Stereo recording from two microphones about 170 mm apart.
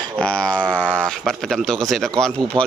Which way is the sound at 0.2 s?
5° left (ahead or behind).